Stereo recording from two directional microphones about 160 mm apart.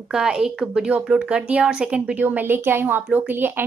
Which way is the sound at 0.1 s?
5° right (ahead or behind).